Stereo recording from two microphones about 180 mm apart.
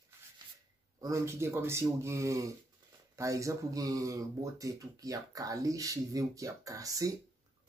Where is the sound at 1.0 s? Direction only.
15° right (ahead or behind).